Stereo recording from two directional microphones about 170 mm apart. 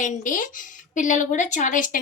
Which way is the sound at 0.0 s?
50° left (ahead or behind).